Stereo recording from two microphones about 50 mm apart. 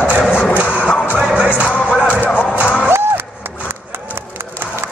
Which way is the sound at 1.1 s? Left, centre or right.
Centre.